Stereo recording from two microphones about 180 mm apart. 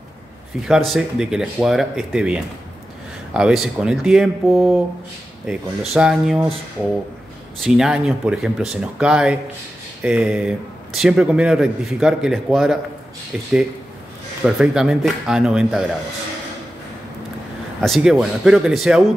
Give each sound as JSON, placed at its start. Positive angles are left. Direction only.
{"t": 0.6, "sound": "speech", "side_deg": 0}
{"t": 7.6, "sound": "speech", "side_deg": -5}
{"t": 14.4, "sound": "speech", "side_deg": -5}
{"t": 17.7, "sound": "speech", "side_deg": 0}